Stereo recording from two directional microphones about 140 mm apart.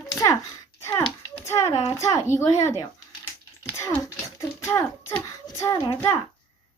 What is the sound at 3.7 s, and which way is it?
Speech, 20° left (ahead or behind).